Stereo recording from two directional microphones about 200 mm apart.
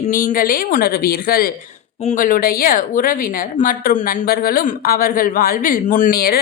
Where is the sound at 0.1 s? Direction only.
45° left (ahead or behind).